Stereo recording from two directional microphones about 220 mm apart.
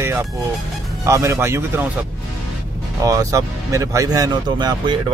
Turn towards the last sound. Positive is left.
turn(degrees=-20)  # may be behind; listen again after turning